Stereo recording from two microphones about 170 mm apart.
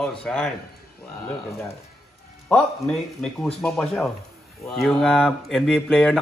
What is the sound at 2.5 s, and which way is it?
Speech, centre (ahead or behind).